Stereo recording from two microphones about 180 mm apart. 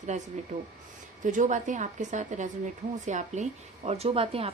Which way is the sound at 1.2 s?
45° right (ahead or behind).